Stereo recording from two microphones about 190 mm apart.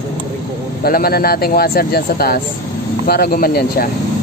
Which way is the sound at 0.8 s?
50° left (ahead or behind).